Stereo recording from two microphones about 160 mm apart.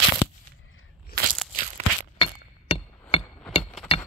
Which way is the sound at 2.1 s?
30° left (ahead or behind).